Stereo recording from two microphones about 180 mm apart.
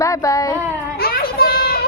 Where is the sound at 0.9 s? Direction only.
55° left (ahead or behind).